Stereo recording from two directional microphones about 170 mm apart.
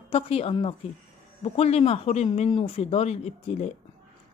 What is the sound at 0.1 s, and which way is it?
A woman's voice, 35° left (ahead or behind).